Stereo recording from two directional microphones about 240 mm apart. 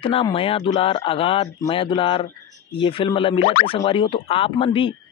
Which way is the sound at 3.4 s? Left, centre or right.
Left.